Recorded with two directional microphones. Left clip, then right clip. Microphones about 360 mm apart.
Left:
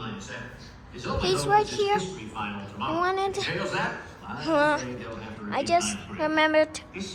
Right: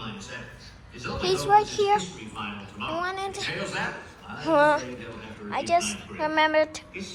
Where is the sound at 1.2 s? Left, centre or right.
Centre.